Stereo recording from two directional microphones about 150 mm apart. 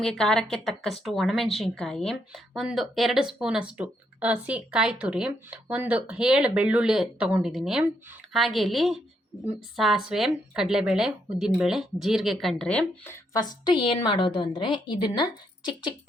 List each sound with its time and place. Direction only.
0.0 s a woman's voice: 5° left (ahead or behind)
13.3 s a woman's voice: 25° left (ahead or behind)